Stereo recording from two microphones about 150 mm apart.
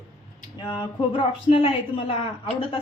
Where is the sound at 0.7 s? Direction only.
30° left (ahead or behind).